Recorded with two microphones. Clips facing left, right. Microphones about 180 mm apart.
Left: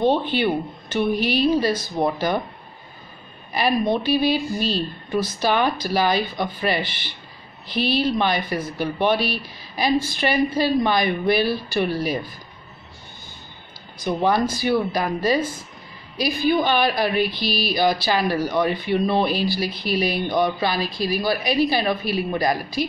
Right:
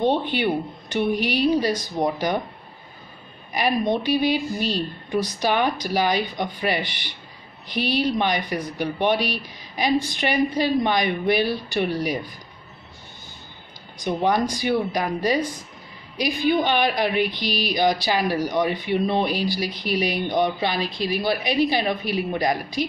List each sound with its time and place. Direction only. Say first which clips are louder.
0.1 s speech: left 2 dB; 15° right (ahead or behind)
3.5 s speech: left 1 dB; 15° right (ahead or behind)
13.9 s speech: left 1 dB; 15° right (ahead or behind)